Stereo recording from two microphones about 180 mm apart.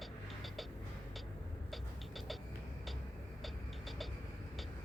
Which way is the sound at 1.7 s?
Centre (ahead or behind).